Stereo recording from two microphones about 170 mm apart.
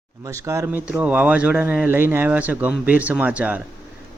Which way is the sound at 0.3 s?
20° right (ahead or behind).